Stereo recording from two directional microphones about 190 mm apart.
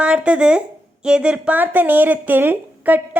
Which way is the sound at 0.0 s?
5° right (ahead or behind).